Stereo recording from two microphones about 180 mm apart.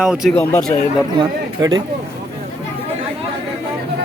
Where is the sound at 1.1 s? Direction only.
20° right (ahead or behind).